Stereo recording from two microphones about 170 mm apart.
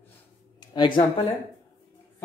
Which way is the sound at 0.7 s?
30° left (ahead or behind).